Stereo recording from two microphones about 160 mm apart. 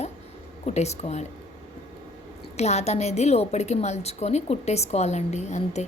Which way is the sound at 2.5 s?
45° left (ahead or behind).